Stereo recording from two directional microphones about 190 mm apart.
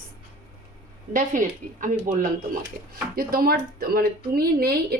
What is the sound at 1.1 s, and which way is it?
A woman's voice, 45° right (ahead or behind).